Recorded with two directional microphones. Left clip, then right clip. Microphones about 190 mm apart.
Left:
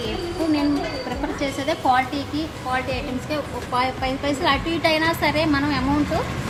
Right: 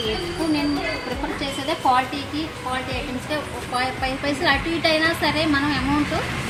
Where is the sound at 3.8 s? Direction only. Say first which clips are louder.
Left 1 dB; 25° left (ahead or behind).